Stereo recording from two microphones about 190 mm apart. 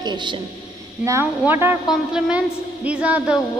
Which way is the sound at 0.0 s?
25° right (ahead or behind).